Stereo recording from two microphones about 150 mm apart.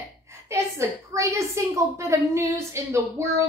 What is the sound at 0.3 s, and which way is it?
A woman's voice, 20° right (ahead or behind).